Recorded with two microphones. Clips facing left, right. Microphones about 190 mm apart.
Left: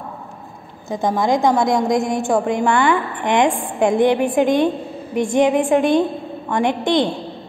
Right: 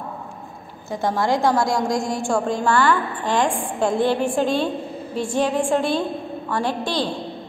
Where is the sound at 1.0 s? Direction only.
15° left (ahead or behind).